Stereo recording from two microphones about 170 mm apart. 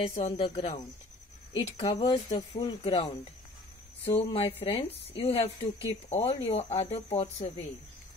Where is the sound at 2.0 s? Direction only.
30° left (ahead or behind).